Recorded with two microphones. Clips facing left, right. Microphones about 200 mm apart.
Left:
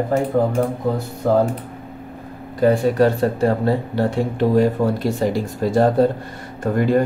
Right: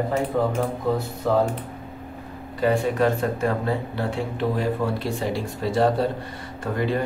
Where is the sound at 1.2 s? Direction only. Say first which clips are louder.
Left 5 dB; 45° left (ahead or behind).